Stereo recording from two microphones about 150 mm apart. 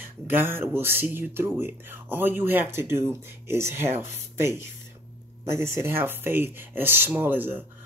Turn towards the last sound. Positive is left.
turn(degrees=-15)  # may be behind; listen again after turning